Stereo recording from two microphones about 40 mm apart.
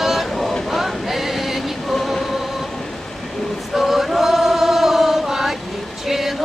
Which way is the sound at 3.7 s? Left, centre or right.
Centre.